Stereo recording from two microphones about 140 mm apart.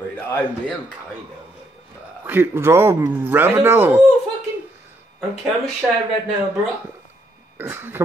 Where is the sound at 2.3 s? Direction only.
15° right (ahead or behind).